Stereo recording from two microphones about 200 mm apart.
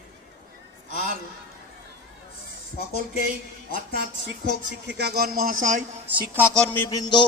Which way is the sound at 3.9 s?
60° right (ahead or behind).